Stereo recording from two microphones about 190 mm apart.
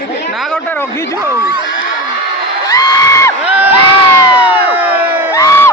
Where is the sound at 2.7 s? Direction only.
20° left (ahead or behind).